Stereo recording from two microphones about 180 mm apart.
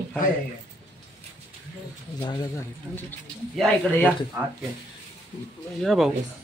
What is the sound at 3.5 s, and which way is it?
Speech, 5° left (ahead or behind).